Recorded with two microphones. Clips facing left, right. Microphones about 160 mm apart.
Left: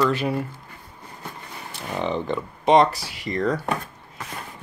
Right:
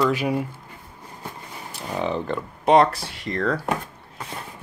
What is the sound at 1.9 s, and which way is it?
Speech, centre (ahead or behind).